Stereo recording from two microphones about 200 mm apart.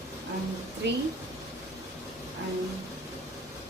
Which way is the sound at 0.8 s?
60° right (ahead or behind).